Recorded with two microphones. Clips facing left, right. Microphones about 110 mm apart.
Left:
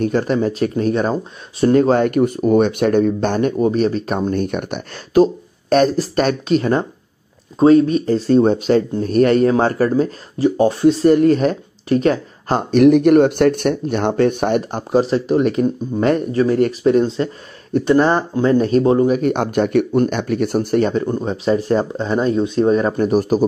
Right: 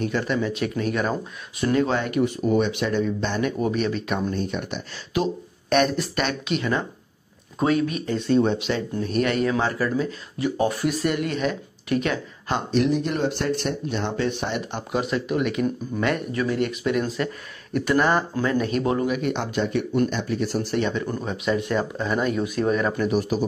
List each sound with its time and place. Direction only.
0.0 s speech: 40° left (ahead or behind)
3.5 s speech: 35° left (ahead or behind)
4.3 s speech: 55° left (ahead or behind); by 12.6 s 40° left (ahead or behind)
12.7 s speech: 60° left (ahead or behind); by 21.1 s 40° left (ahead or behind)
21.1 s speech: 30° left (ahead or behind)